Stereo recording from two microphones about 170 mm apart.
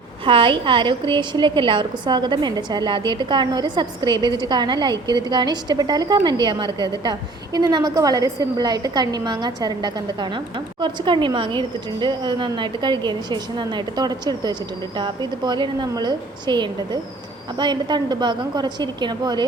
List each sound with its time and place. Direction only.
0.3 s a woman's voice: 30° right (ahead or behind)